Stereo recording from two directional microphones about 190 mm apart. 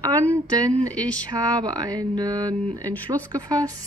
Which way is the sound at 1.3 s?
20° right (ahead or behind).